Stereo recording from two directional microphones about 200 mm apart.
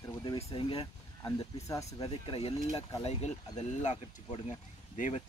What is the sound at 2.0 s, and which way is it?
Speech, 25° left (ahead or behind).